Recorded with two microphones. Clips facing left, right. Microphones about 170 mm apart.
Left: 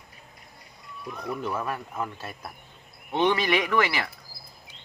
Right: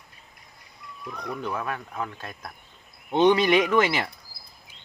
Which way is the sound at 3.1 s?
20° right (ahead or behind).